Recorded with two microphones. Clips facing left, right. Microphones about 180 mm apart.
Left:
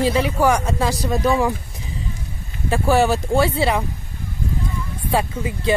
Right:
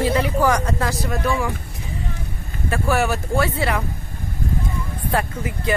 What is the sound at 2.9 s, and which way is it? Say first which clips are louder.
Speech: left 4 dB; 30° left (ahead or behind).